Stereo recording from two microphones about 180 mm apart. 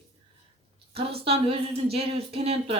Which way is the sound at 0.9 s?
30° right (ahead or behind).